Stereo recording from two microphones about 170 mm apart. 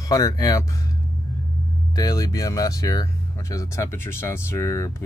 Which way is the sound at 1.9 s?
20° left (ahead or behind).